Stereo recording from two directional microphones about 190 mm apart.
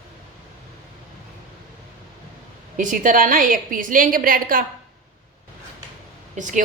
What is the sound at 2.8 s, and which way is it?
A woman's voice, 45° right (ahead or behind).